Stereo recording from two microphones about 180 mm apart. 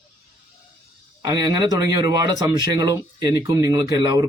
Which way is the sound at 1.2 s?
20° right (ahead or behind).